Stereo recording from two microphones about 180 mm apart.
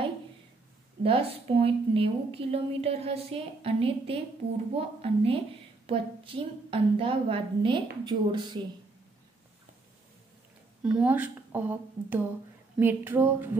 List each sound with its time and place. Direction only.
1.0 s a woman's voice: 30° right (ahead or behind)
10.8 s a woman's voice: 5° right (ahead or behind)
12.7 s a sound: 10° right (ahead or behind)